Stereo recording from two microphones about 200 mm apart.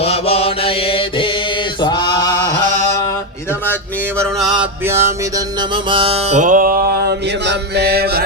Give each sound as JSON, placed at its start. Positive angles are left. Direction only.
{"t": 0.0, "sound": "mantra", "side_deg": 30}
{"t": 1.8, "sound": "a sound", "side_deg": 20}
{"t": 4.4, "sound": "mantra", "side_deg": -5}
{"t": 5.7, "sound": "mantra", "side_deg": -25}